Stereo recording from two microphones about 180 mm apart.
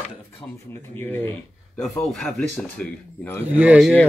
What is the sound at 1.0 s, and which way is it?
Speech, 10° left (ahead or behind).